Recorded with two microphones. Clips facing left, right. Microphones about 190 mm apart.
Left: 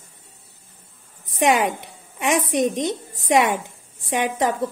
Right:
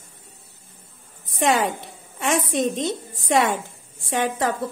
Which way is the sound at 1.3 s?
15° left (ahead or behind).